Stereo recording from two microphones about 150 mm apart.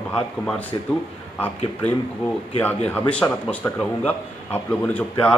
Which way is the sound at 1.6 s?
40° left (ahead or behind).